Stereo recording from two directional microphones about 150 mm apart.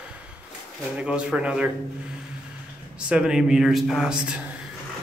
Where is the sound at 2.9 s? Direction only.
5° right (ahead or behind).